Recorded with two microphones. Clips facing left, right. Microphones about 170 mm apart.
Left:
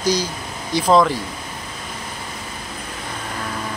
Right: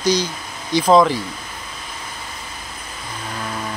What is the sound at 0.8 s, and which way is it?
Speech, centre (ahead or behind).